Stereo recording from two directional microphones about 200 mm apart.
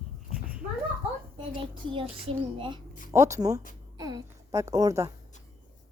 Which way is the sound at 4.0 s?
20° right (ahead or behind).